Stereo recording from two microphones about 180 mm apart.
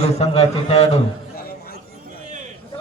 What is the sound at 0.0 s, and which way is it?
A man's voice, 35° left (ahead or behind).